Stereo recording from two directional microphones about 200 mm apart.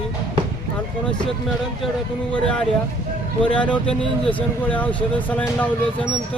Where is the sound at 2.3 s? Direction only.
5° left (ahead or behind).